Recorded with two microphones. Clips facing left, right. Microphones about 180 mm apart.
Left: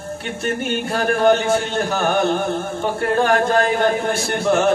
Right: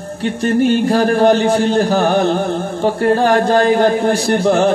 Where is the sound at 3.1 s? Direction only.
35° right (ahead or behind).